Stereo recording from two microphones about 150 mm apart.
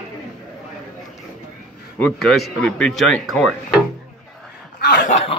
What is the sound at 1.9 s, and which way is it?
A man's voice, 5° left (ahead or behind).